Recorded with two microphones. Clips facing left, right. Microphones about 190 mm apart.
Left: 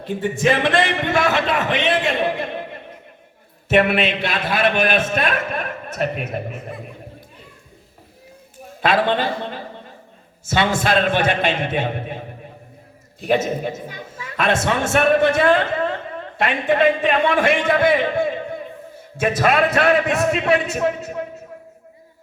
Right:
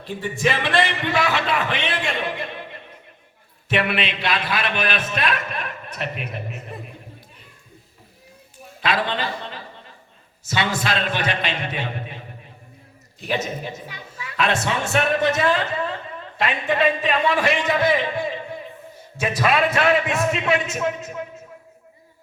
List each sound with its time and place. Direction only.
0.0 s a woman's voice: 50° left (ahead or behind)
3.7 s a woman's voice: 50° left (ahead or behind)
8.8 s a sound: 50° left (ahead or behind)
10.5 s a woman's voice: 50° left (ahead or behind)
13.2 s a woman's voice: 50° left (ahead or behind)
20.3 s a man's voice: 60° left (ahead or behind)